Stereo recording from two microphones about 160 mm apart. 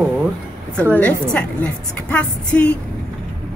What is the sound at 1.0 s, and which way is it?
Speech, 10° left (ahead or behind).